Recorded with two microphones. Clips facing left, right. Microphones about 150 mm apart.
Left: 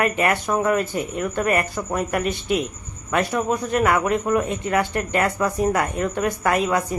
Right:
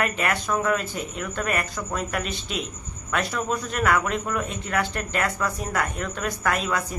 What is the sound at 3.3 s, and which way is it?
A woman's voice, 15° left (ahead or behind).